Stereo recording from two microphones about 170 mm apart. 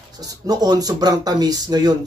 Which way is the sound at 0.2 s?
20° right (ahead or behind).